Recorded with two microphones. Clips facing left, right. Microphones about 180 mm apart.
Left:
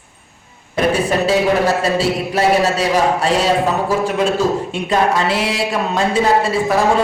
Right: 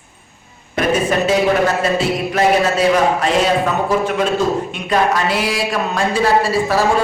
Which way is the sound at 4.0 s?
35° left (ahead or behind).